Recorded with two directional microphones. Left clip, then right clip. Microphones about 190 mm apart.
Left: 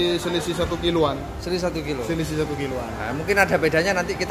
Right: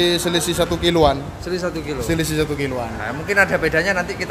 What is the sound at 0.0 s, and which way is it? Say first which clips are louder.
Speech: right 5 dB; 45° right (ahead or behind).